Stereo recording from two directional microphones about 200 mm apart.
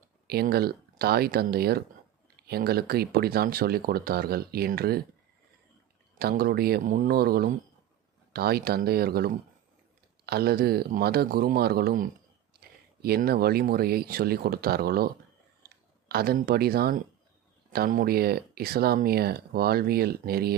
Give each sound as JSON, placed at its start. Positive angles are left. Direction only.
{"t": 0.3, "sound": "speech", "side_deg": -50}
{"t": 6.1, "sound": "speech", "side_deg": -50}